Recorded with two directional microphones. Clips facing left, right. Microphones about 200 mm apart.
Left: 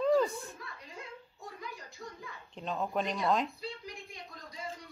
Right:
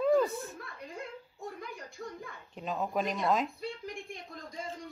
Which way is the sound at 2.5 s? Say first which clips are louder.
Right 1 dB; 5° right (ahead or behind).